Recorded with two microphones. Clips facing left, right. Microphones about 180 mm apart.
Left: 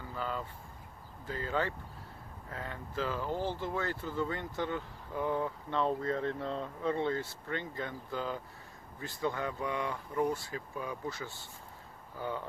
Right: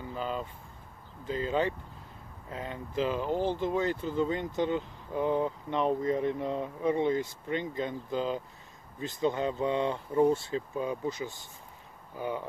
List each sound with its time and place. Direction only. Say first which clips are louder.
0.0 s speech: right 3 dB; 20° right (ahead or behind)